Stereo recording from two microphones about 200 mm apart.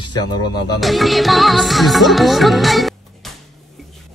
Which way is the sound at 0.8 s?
Centre (ahead or behind).